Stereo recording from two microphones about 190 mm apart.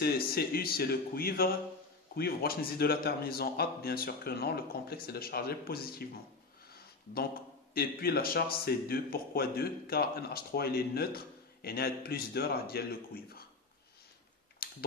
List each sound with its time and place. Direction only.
0.0 s speech: 55° left (ahead or behind)
7.7 s speech: 55° left (ahead or behind)
14.6 s mechanisms: 50° left (ahead or behind)